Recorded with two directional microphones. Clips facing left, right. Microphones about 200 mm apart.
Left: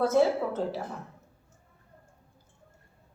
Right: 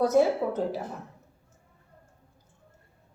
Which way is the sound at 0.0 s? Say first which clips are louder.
Right 1 dB; 15° right (ahead or behind).